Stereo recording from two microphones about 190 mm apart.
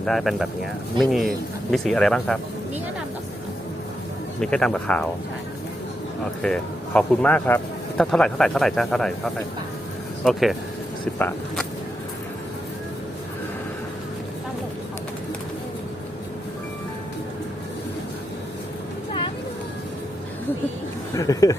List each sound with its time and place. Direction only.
0.0 s speech: centre (ahead or behind)
4.4 s speech: 5° left (ahead or behind)
6.4 s speech: 5° left (ahead or behind)
11.2 s speech: 10° left (ahead or behind)
21.2 s speech: 20° left (ahead or behind)